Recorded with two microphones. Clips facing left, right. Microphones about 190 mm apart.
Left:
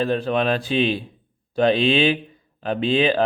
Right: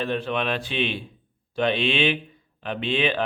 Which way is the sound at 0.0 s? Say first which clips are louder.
Left 5 dB; 40° left (ahead or behind).